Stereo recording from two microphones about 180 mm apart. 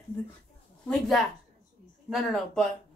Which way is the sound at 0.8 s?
Centre (ahead or behind).